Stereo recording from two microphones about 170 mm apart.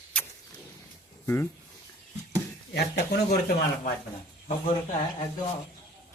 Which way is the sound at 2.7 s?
70° left (ahead or behind).